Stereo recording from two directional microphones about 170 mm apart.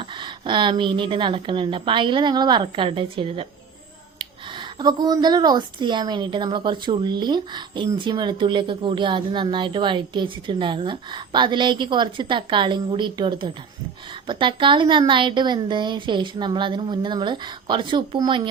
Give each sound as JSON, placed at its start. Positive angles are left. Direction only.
{"t": 0.0, "sound": "speech", "side_deg": -30}